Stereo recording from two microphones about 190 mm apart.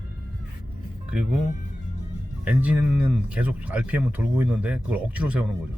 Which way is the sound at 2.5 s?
5° right (ahead or behind).